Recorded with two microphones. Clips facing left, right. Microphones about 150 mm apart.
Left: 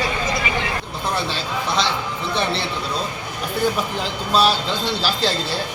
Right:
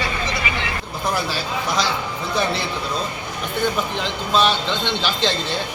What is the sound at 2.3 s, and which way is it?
Speech, 30° left (ahead or behind).